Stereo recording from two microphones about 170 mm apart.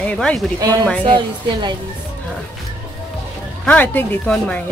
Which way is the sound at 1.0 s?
30° right (ahead or behind).